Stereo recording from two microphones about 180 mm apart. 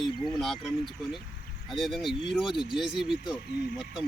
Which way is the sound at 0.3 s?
Centre (ahead or behind).